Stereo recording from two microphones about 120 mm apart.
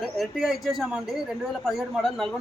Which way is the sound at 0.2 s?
Centre (ahead or behind).